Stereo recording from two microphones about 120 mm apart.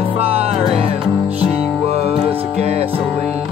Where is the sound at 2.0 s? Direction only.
60° right (ahead or behind).